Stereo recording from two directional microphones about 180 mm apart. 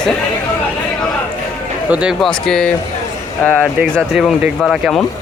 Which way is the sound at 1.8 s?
5° right (ahead or behind).